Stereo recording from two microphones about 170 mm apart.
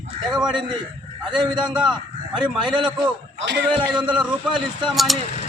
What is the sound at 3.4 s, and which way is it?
Speech, 90° right.